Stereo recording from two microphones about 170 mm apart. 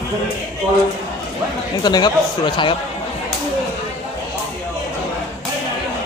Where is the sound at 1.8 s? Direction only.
25° left (ahead or behind).